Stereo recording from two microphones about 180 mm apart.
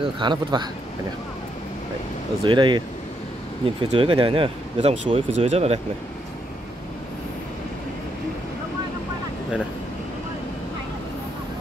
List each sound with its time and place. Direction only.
0.0 s speech: 25° right (ahead or behind)
2.4 s speech: 25° right (ahead or behind)
3.8 s speech: 30° right (ahead or behind)